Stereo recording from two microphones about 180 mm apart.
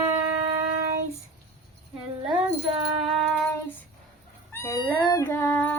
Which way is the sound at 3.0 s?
Centre (ahead or behind).